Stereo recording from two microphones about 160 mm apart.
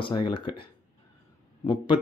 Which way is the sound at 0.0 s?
30° left (ahead or behind).